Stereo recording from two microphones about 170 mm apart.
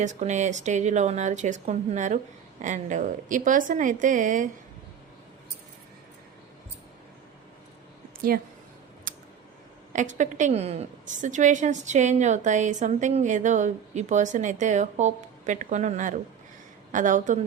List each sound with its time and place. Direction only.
0.0 s a woman's voice: 45° right (ahead or behind)
9.1 s a sound: 55° right (ahead or behind)
9.9 s a woman's voice: 45° right (ahead or behind)